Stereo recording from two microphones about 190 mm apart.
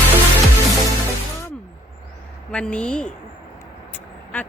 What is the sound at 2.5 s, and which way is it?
Speech, 5° left (ahead or behind).